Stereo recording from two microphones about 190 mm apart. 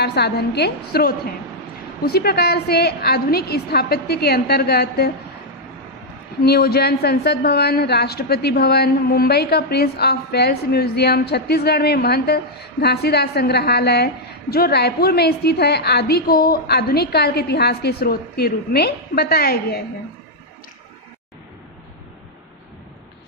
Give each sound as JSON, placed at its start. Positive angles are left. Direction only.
{"t": 0.0, "sound": "a woman's voice", "side_deg": 60}
{"t": 6.4, "sound": "a woman's voice", "side_deg": 55}